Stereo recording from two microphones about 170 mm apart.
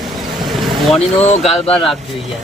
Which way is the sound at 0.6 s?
5° left (ahead or behind).